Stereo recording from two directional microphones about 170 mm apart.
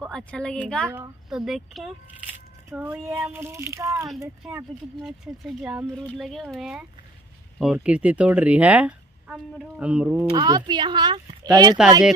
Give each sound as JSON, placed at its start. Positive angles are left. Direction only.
{"t": 0.0, "sound": "speech", "side_deg": 5}
{"t": 0.8, "sound": "speech", "side_deg": -15}
{"t": 1.3, "sound": "speech", "side_deg": 0}
{"t": 10.3, "sound": "speech", "side_deg": -25}